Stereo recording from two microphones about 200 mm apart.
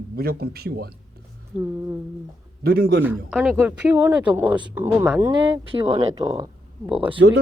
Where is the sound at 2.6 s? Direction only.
50° right (ahead or behind).